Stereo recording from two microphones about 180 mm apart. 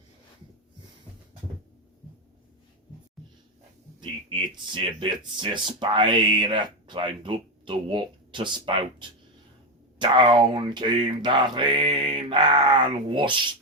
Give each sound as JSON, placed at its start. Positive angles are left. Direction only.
{"t": 4.0, "sound": "speech", "side_deg": -25}